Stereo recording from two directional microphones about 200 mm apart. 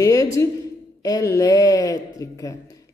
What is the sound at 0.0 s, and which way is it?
A woman's voice, 15° left (ahead or behind).